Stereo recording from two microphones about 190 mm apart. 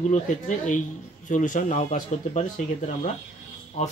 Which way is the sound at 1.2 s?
40° left (ahead or behind).